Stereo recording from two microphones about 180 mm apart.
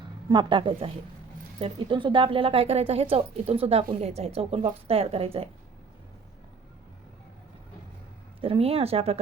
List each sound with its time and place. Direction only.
0.3 s a woman's voice: 25° right (ahead or behind)
8.4 s a woman's voice: 30° right (ahead or behind)